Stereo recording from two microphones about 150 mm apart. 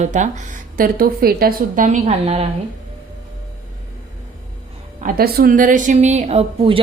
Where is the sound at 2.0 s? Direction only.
40° right (ahead or behind).